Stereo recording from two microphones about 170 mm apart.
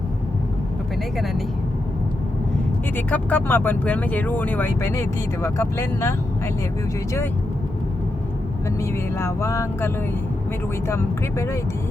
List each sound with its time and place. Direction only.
2.9 s speech: 10° left (ahead or behind)
8.8 s speech: 15° left (ahead or behind)